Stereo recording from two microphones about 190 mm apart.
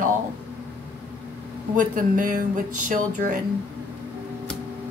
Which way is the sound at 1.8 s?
45° right (ahead or behind).